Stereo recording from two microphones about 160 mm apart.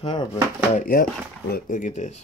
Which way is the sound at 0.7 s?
60° left (ahead or behind).